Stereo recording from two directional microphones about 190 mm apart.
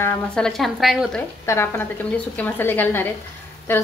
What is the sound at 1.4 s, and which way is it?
A woman's voice, 10° left (ahead or behind).